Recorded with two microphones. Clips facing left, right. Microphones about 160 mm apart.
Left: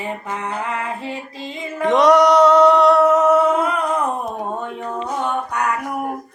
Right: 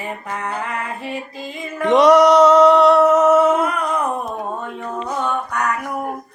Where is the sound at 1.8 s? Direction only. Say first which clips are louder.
Right 2 dB; centre (ahead or behind).